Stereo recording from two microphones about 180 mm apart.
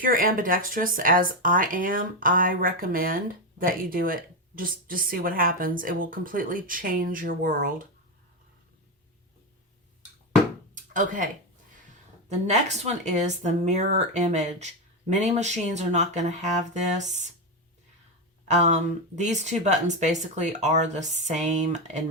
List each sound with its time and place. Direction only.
0.0 s speech: 50° right (ahead or behind)
10.8 s a sound: 45° right (ahead or behind)
12.5 s speech: 40° right (ahead or behind)
18.4 s speech: 40° right (ahead or behind)